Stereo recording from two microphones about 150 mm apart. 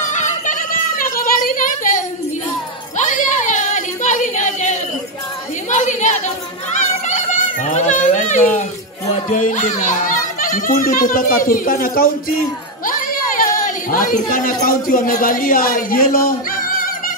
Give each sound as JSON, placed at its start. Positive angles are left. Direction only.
{"t": 0.0, "sound": "a sound", "side_deg": 55}
{"t": 5.7, "sound": "chatter", "side_deg": 55}
{"t": 9.1, "sound": "speech", "side_deg": 55}